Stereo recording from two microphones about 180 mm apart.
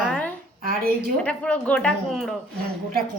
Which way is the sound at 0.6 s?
55° right (ahead or behind).